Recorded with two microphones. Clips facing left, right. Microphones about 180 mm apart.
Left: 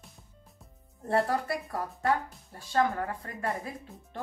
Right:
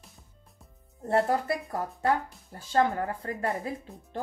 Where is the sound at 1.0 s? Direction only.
25° right (ahead or behind).